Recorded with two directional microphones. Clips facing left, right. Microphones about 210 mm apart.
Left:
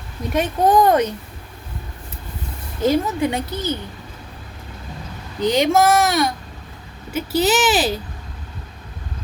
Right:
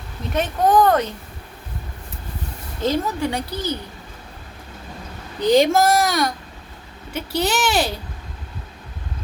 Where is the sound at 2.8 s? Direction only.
15° left (ahead or behind).